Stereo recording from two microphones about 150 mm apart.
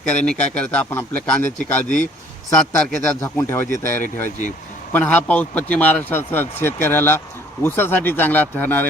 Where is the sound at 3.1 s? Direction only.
15° left (ahead or behind).